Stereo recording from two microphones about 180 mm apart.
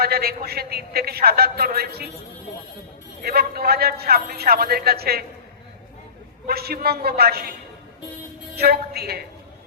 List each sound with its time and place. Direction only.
0.0 s a man's voice: 60° right (ahead or behind)
3.2 s a man's voice: 60° right (ahead or behind)
6.5 s a man's voice: 60° right (ahead or behind)
8.5 s a man's voice: 60° right (ahead or behind)